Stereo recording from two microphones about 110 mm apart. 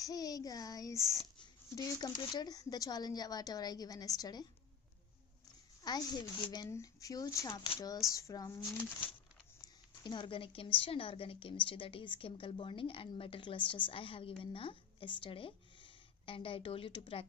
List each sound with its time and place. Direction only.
0.0 s speech: 35° left (ahead or behind)
5.9 s speech: 40° left (ahead or behind)
7.5 s speech: 45° left (ahead or behind)
8.1 s speech: 30° left (ahead or behind)
9.6 s speech: 40° left (ahead or behind)